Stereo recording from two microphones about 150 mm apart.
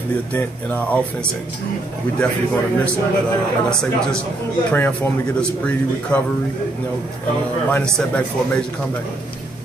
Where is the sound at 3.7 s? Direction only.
5° left (ahead or behind).